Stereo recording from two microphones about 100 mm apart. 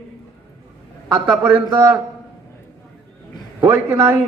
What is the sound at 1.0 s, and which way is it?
Speech, 15° right (ahead or behind).